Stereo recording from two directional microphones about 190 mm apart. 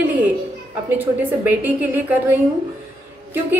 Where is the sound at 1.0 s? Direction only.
10° right (ahead or behind).